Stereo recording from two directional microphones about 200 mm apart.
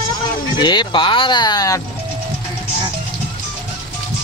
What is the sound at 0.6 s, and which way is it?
Speech, 25° left (ahead or behind).